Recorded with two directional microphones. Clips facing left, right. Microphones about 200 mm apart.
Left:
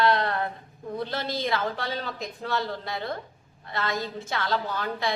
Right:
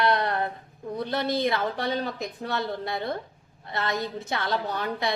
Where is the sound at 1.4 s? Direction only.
20° right (ahead or behind).